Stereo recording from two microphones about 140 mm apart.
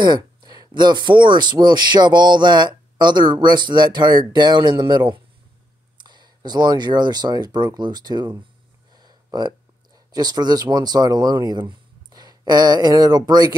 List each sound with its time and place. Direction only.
0.0 s speech: 30° right (ahead or behind)
8.9 s a sound: 30° right (ahead or behind)
9.9 s speech: 30° right (ahead or behind)